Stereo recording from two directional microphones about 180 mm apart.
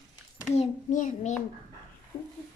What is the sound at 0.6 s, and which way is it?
Speech, 40° left (ahead or behind).